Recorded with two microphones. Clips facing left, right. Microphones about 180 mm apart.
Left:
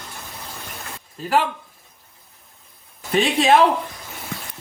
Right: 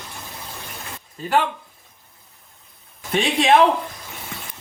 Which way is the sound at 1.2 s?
Centre (ahead or behind).